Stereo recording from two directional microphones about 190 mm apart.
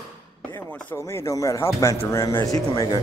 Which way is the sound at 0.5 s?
15° left (ahead or behind).